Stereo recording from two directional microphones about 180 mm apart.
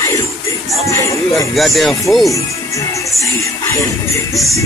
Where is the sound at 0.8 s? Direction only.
15° left (ahead or behind).